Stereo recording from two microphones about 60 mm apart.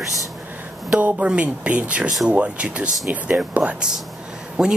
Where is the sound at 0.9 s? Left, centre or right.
Right.